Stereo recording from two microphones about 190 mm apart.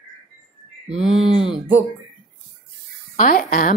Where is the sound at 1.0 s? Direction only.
Centre (ahead or behind).